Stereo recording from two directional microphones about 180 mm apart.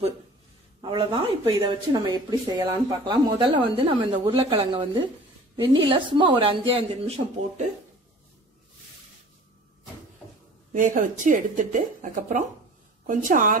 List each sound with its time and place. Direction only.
0.7 s speech: 25° right (ahead or behind)
10.7 s a woman's voice: 50° right (ahead or behind)